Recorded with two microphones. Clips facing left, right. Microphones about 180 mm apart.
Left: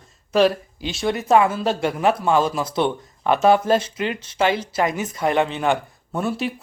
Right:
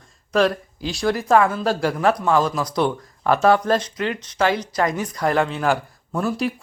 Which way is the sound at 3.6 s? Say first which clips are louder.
Left 1 dB; 5° left (ahead or behind).